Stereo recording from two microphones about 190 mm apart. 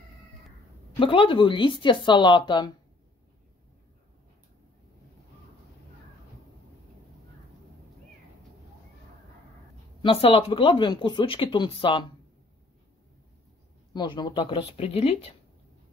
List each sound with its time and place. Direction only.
0.9 s speech: 25° left (ahead or behind)
10.0 s speech: 30° left (ahead or behind)
13.9 s speech: 25° left (ahead or behind)